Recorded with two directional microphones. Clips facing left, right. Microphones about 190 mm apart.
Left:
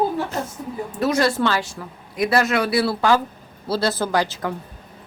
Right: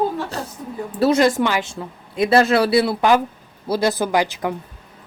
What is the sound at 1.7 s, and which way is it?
Speech, 25° right (ahead or behind).